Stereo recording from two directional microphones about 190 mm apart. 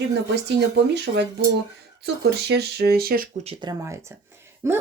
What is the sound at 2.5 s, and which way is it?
Speech, 60° right (ahead or behind).